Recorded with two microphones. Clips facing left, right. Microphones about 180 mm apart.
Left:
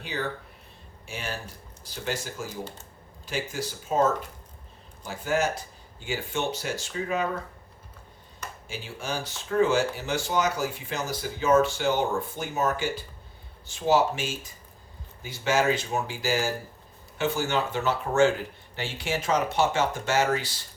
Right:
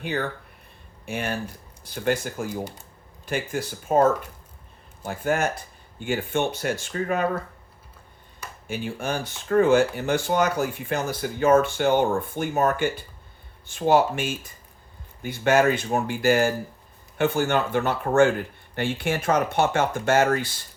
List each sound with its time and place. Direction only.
1.0 s speech: 55° right (ahead or behind)
2.5 s speech: 10° right (ahead or behind)
3.2 s speech: 55° right (ahead or behind)
5.0 s speech: 55° right (ahead or behind)
8.6 s speech: 55° right (ahead or behind)